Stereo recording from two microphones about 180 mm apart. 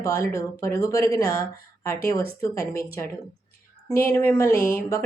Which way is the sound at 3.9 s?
15° left (ahead or behind).